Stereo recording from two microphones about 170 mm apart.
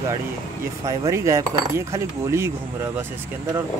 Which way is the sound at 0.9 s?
15° right (ahead or behind).